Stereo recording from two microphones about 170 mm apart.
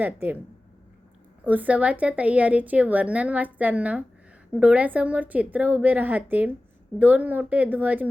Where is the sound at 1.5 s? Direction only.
10° right (ahead or behind).